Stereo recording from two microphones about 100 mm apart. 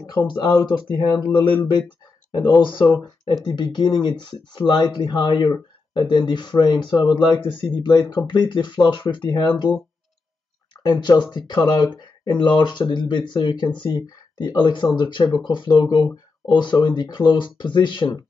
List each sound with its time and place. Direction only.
0.2 s speech: 25° left (ahead or behind)
0.5 s speech: 45° left (ahead or behind)
2.3 s speech: 50° left (ahead or behind)
10.7 s speech: 45° left (ahead or behind)